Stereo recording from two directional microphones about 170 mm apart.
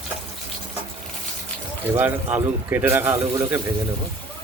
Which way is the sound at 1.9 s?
10° right (ahead or behind).